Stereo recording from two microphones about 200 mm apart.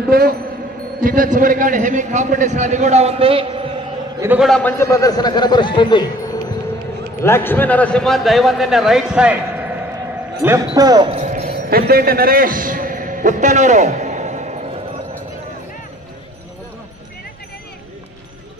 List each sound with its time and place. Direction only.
0.1 s a man's voice: 50° right (ahead or behind); by 3.6 s 25° right (ahead or behind)
4.2 s a man's voice: 10° right (ahead or behind)
4.5 s a man's voice: 5° left (ahead or behind); by 6.4 s 20° left (ahead or behind)
7.2 s a man's voice: 10° left (ahead or behind); by 9.4 s 5° right (ahead or behind)
10.4 s speech: 15° right (ahead or behind)
11.1 s a sound: 45° right (ahead or behind)